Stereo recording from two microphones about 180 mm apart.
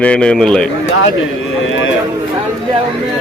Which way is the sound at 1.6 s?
90° left.